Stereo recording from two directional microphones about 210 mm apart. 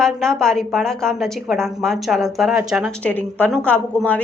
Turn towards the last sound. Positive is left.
turn(degrees=5)  # may be behind; listen again after turning